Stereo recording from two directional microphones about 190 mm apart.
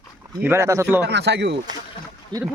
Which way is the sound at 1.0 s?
65° right (ahead or behind).